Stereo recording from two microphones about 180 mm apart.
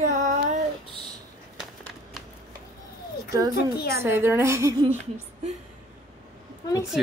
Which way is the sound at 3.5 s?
60° left (ahead or behind).